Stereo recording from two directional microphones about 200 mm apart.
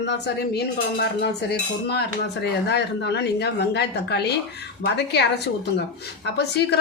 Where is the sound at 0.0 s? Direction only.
55° left (ahead or behind).